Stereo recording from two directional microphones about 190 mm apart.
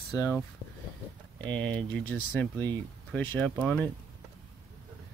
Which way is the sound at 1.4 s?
5° left (ahead or behind).